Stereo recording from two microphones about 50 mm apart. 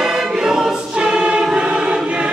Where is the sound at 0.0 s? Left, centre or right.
Centre.